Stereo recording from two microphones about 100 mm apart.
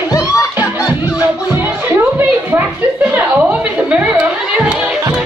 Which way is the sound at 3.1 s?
15° right (ahead or behind).